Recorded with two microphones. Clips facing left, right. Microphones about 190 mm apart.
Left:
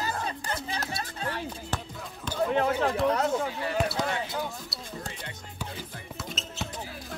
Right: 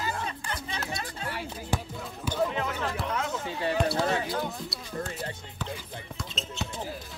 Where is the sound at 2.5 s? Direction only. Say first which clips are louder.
Left 6 dB; 45° left (ahead or behind).